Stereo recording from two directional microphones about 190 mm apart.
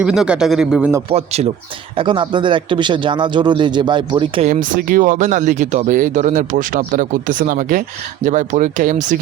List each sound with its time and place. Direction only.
0.0 s speech: 5° right (ahead or behind)
1.1 s speech: 35° right (ahead or behind)
4.4 s speech: 40° right (ahead or behind)